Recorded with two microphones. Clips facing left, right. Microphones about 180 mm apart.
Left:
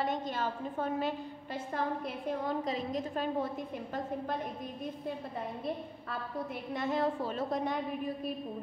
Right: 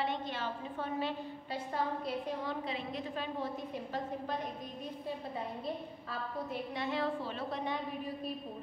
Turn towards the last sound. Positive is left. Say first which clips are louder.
# left 4 dB
turn(degrees=45)  # may be behind; listen again after turning